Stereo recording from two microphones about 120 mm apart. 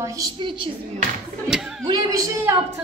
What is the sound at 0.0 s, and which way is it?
Speech, 30° right (ahead or behind).